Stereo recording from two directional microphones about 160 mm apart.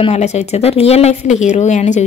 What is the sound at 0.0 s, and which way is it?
Speech, 45° left (ahead or behind).